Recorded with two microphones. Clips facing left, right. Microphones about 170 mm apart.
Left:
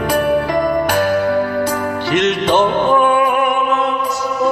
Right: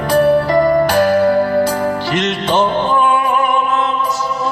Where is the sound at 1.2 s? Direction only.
35° right (ahead or behind).